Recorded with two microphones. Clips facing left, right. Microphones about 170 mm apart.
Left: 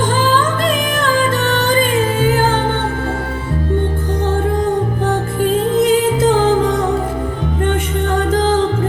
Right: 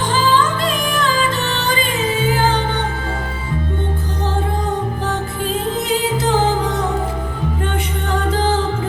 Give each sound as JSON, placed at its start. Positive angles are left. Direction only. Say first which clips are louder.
{"t": 0.3, "sound": "music", "louder": "left 2 dB", "side_deg": 50}
{"t": 5.7, "sound": "music", "louder": "left 6 dB", "side_deg": 50}